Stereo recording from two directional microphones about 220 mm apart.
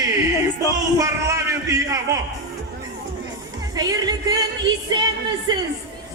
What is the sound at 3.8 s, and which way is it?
Speech, 15° right (ahead or behind).